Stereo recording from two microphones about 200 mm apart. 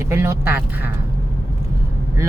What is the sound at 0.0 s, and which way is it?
Speech, 15° right (ahead or behind).